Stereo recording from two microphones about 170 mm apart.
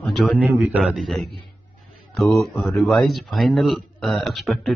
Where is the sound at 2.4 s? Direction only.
Centre (ahead or behind).